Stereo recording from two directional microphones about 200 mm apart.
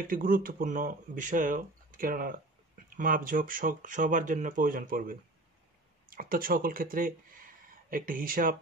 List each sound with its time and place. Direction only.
0.0 s speech: 45° right (ahead or behind)